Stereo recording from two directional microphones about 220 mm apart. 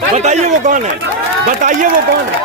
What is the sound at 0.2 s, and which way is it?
Speech, 30° right (ahead or behind).